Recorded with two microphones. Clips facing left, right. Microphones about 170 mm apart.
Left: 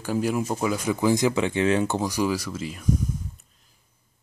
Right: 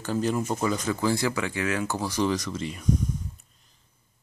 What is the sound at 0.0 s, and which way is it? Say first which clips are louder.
Speech: left 1 dB; 10° left (ahead or behind).